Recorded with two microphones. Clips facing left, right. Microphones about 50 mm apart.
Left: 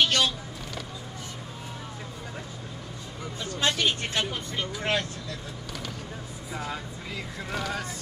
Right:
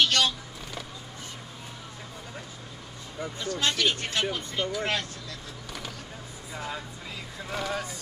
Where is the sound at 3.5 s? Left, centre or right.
Left.